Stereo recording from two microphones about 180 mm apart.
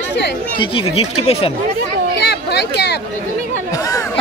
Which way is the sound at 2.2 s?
65° left (ahead or behind).